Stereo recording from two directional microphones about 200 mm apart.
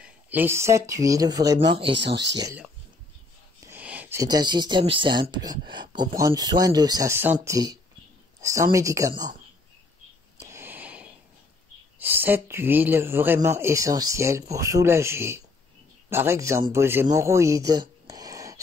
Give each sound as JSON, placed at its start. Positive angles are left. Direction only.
{"t": 0.0, "sound": "speech", "side_deg": -10}
{"t": 3.6, "sound": "speech", "side_deg": -10}
{"t": 10.4, "sound": "a sound", "side_deg": -10}
{"t": 12.0, "sound": "a man's voice", "side_deg": -10}